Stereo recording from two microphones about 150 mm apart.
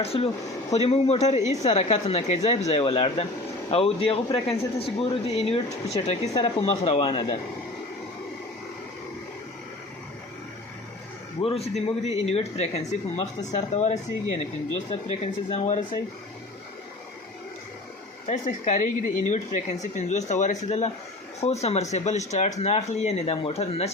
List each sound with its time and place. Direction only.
0.0 s speech: 40° left (ahead or behind)
11.4 s speech: 40° left (ahead or behind)
18.3 s speech: 55° left (ahead or behind)